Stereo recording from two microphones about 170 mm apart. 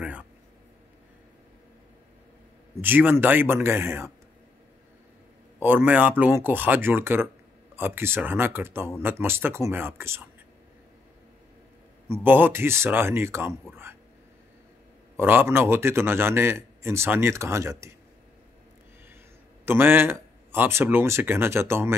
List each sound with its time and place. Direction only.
0.0 s a sound: 10° right (ahead or behind)
2.8 s a man's voice: 10° right (ahead or behind)
5.6 s a man's voice: 10° right (ahead or behind)
12.1 s a man's voice: 10° right (ahead or behind)
15.1 s a man's voice: 10° right (ahead or behind)
19.6 s a man's voice: 10° right (ahead or behind)